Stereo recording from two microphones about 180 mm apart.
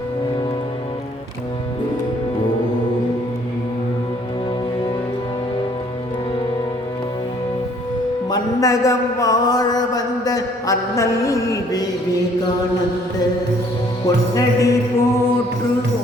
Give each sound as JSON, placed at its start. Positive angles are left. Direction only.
{"t": 8.3, "sound": "mantra", "side_deg": 20}
{"t": 14.3, "sound": "music", "side_deg": 20}